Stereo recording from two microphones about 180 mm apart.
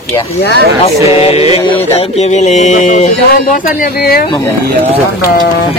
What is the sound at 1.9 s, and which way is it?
Speech, 35° left (ahead or behind).